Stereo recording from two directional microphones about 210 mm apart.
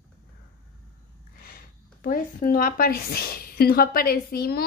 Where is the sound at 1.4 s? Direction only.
45° left (ahead or behind).